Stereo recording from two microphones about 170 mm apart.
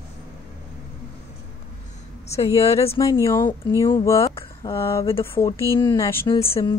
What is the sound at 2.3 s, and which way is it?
Speech, 35° left (ahead or behind).